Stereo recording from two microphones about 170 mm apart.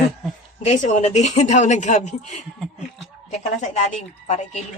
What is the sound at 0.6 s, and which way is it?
Speech, 40° left (ahead or behind).